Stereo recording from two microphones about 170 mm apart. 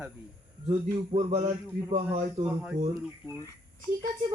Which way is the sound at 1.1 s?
40° right (ahead or behind).